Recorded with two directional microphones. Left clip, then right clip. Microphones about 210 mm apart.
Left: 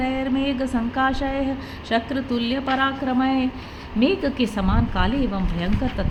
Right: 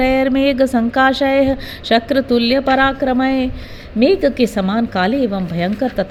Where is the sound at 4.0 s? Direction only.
25° right (ahead or behind).